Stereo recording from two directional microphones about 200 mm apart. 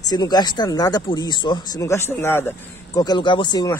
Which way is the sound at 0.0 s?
20° left (ahead or behind).